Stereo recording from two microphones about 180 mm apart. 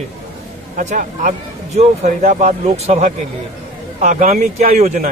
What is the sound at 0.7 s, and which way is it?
Speech, 45° right (ahead or behind).